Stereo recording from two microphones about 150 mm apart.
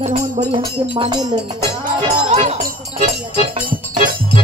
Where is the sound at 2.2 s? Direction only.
50° right (ahead or behind).